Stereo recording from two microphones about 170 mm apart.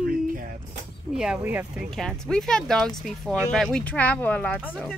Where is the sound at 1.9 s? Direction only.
Centre (ahead or behind).